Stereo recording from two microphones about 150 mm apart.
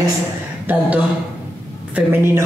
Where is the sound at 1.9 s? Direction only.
15° right (ahead or behind).